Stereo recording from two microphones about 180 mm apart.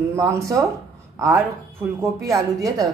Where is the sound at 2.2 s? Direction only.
20° right (ahead or behind).